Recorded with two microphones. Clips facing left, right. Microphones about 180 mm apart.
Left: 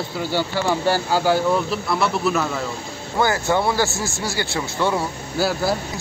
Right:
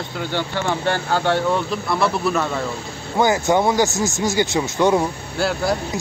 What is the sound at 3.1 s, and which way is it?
Speech, 20° right (ahead or behind).